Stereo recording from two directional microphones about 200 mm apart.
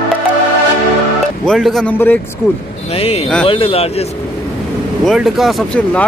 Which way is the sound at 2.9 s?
30° left (ahead or behind).